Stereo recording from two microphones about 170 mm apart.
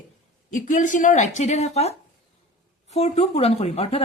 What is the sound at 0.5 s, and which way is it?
A woman's voice, 50° left (ahead or behind).